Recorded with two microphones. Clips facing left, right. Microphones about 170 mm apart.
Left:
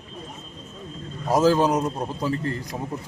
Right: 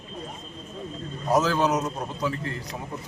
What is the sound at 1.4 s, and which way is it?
Speech, 35° left (ahead or behind).